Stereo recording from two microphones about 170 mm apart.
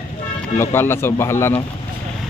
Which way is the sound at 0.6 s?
15° left (ahead or behind).